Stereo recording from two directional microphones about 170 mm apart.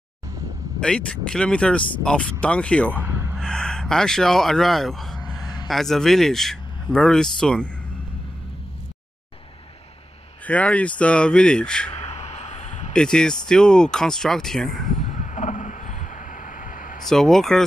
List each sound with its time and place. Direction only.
0.7 s speech: 5° left (ahead or behind)
2.9 s gasp: 10° right (ahead or behind)
3.3 s speech: 5° left (ahead or behind)
10.4 s speech: 10° left (ahead or behind)
11.9 s a sound: 40° left (ahead or behind)
12.9 s speech: 5° left (ahead or behind)
14.9 s a sound: 45° left (ahead or behind)
17.1 s speech: centre (ahead or behind)